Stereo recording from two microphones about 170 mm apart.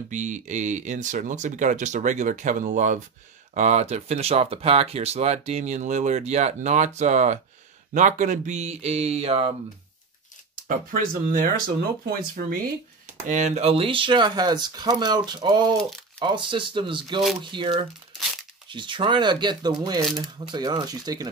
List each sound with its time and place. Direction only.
0.1 s speech: 45° right (ahead or behind)
10.7 s speech: 55° right (ahead or behind)
13.3 s speech: 45° right (ahead or behind); by 21.3 s 20° right (ahead or behind)